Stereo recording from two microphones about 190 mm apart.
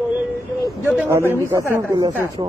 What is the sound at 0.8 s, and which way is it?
A man's voice, 10° right (ahead or behind).